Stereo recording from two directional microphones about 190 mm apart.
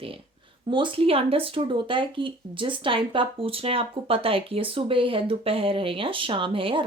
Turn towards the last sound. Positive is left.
turn(degrees=-30)  # may be behind; listen again after turning